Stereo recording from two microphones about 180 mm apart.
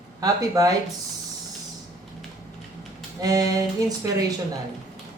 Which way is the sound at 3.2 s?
20° right (ahead or behind).